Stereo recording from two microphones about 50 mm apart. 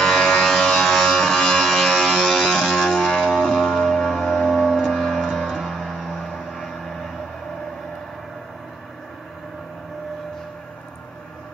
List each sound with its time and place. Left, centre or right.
0.0 s a sound: centre
4.7 s music: centre
6.0 s vehicle: centre